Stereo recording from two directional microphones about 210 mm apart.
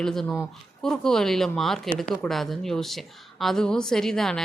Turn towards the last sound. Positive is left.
turn(degrees=0)  # may be behind; listen again after turning